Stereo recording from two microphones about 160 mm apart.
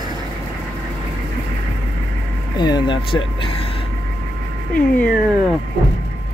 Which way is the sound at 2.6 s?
30° left (ahead or behind).